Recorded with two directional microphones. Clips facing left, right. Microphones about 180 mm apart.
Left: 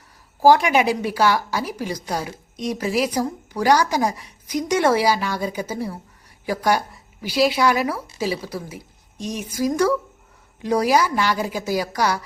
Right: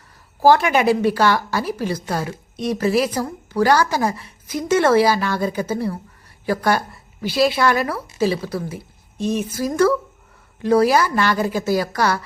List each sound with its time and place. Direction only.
0.4 s a woman's voice: 15° left (ahead or behind)